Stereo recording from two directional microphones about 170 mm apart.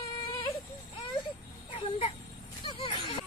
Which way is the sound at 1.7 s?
35° left (ahead or behind).